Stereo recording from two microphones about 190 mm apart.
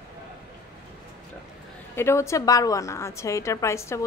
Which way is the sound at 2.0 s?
15° left (ahead or behind).